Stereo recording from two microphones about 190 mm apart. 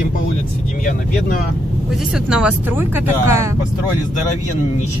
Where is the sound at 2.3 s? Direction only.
5° right (ahead or behind).